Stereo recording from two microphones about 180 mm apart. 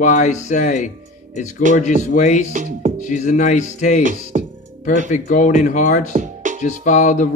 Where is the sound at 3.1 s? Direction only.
40° left (ahead or behind).